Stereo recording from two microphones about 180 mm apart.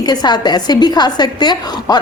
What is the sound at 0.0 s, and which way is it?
A woman's voice, 25° left (ahead or behind).